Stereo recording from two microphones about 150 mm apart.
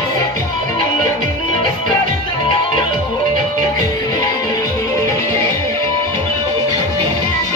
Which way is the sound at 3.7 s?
20° left (ahead or behind).